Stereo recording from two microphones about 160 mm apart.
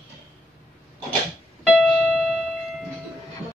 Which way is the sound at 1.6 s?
5° left (ahead or behind).